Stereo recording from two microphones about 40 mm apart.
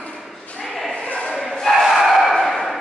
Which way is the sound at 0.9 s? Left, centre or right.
Left.